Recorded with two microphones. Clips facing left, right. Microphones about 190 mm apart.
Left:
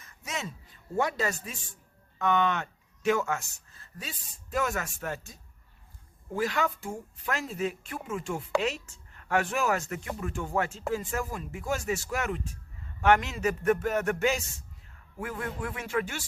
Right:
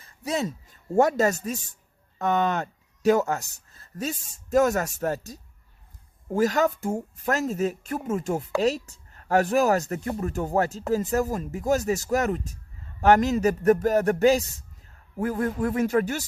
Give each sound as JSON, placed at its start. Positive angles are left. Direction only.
{"t": 0.0, "sound": "speech", "side_deg": -35}